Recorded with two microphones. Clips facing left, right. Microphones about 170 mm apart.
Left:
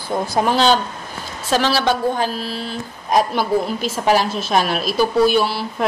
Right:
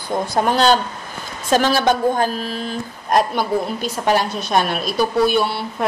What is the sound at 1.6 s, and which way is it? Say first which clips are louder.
Mantra: right 1 dB; 50° right (ahead or behind).